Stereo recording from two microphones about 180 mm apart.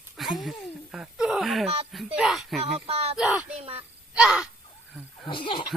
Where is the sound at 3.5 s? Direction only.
35° right (ahead or behind).